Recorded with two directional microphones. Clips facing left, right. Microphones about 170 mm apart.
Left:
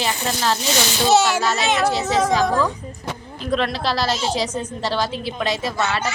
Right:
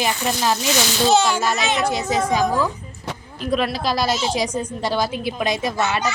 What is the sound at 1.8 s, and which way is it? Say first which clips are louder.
A woman's voice: left 2 dB; 15° right (ahead or behind).